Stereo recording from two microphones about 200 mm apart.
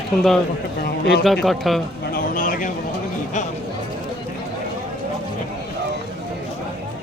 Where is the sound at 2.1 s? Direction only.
45° left (ahead or behind).